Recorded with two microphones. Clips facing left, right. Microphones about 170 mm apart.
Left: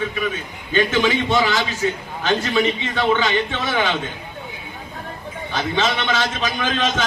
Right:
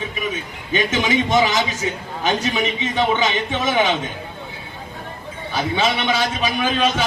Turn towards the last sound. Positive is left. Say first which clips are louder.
# right 2 dB
turn(degrees=-10)  # may be behind; listen again after turning